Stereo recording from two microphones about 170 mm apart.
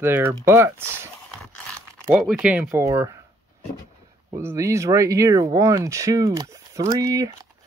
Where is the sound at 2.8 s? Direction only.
15° right (ahead or behind).